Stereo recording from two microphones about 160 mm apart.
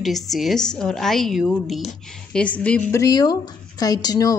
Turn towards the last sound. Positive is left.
turn(degrees=25)  # may be behind; listen again after turning